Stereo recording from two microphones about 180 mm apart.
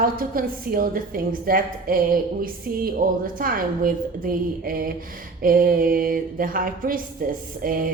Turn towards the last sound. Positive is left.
turn(degrees=-50)  # may be behind; listen again after turning